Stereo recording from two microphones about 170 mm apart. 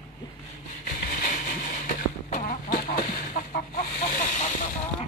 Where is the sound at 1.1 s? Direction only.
50° left (ahead or behind).